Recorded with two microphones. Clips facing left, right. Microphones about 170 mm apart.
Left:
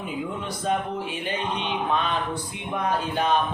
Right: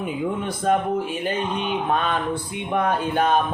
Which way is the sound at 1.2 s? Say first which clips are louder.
Right 4 dB; 45° right (ahead or behind).